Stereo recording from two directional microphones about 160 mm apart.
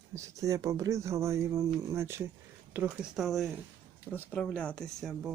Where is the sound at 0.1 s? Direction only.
20° right (ahead or behind).